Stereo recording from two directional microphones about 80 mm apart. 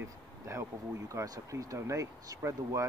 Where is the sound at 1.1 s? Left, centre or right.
Right.